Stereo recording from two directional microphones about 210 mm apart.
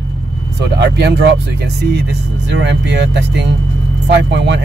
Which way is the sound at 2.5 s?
55° right (ahead or behind).